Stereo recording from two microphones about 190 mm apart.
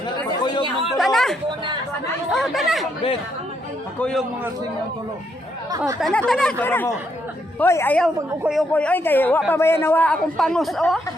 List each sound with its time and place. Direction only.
0.9 s chatter: centre (ahead or behind)
2.3 s speech: centre (ahead or behind)
5.7 s speech: 15° right (ahead or behind)
6.0 s speech: centre (ahead or behind)